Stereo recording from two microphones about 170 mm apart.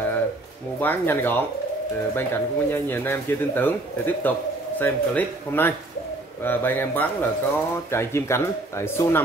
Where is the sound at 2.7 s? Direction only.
15° left (ahead or behind).